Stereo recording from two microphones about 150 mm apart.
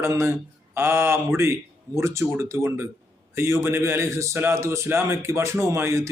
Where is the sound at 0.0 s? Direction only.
20° right (ahead or behind).